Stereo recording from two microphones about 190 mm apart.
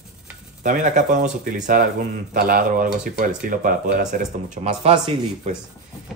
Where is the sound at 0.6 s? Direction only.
40° right (ahead or behind).